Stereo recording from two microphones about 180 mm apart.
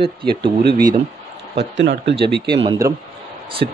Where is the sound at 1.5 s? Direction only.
85° right; by 2.6 s 65° right (ahead or behind).